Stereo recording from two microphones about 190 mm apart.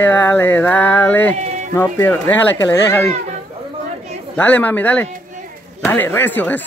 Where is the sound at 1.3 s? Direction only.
35° right (ahead or behind).